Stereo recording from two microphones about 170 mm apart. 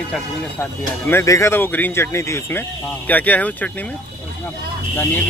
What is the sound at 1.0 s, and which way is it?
Speech, 15° left (ahead or behind).